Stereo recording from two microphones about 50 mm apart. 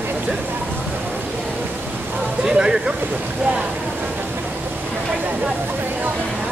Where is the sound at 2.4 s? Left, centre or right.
Centre.